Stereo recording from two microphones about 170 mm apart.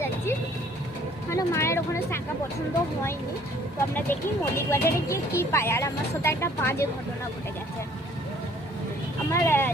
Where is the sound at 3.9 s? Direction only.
15° left (ahead or behind).